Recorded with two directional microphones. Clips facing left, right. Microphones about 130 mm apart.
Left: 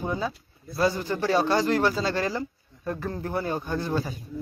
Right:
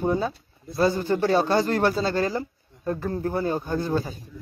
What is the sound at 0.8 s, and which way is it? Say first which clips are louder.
Speech: right 3 dB; 45° right (ahead or behind).